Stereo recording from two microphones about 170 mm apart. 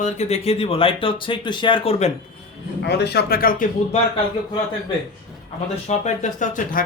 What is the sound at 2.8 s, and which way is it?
Speech, 75° left (ahead or behind).